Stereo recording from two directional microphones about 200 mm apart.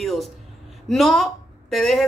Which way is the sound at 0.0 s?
Centre (ahead or behind).